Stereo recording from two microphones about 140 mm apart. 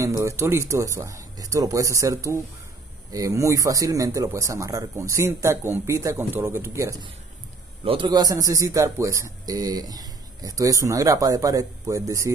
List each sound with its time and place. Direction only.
0.0 s speech: 20° right (ahead or behind)
7.8 s a man's voice: 40° right (ahead or behind)
8.1 s speech: 25° right (ahead or behind)